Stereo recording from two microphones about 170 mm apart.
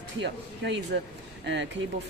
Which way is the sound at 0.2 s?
90° right.